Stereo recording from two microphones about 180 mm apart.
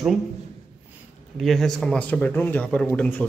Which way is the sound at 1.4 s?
Centre (ahead or behind).